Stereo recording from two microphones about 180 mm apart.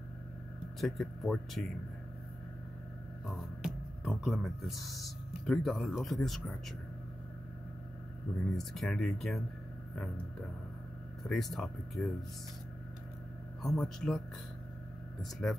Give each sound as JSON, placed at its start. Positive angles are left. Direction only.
{"t": 0.7, "sound": "speech", "side_deg": 0}
{"t": 3.6, "sound": "speech", "side_deg": 0}
{"t": 8.5, "sound": "speech", "side_deg": 0}
{"t": 11.2, "sound": "speech", "side_deg": 0}
{"t": 13.6, "sound": "speech", "side_deg": 0}